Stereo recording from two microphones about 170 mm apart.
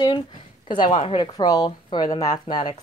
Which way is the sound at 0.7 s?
30° left (ahead or behind).